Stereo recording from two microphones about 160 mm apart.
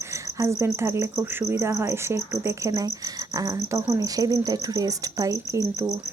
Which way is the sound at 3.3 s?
20° right (ahead or behind).